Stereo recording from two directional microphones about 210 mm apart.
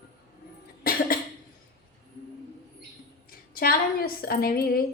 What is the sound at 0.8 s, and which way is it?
Cough, 45° left (ahead or behind).